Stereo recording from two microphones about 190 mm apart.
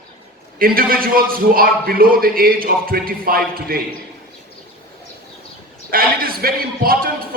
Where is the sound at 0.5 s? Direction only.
50° right (ahead or behind).